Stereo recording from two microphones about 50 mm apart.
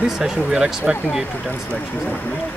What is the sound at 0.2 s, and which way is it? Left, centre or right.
Speech, centre.